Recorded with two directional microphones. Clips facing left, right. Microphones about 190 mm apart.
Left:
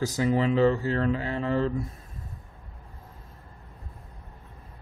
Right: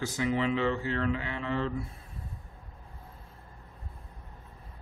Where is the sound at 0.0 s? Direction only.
40° left (ahead or behind).